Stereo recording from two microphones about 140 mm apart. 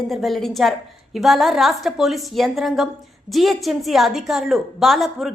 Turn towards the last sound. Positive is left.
turn(degrees=0)  # may be behind; listen again after turning